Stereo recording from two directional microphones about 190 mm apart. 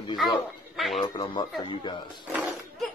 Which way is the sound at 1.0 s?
25° left (ahead or behind).